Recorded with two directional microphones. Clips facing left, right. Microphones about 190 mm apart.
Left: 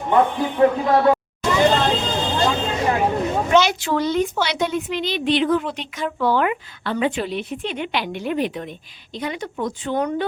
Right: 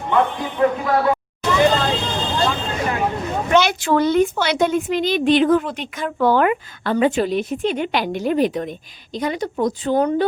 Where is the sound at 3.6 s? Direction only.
55° right (ahead or behind).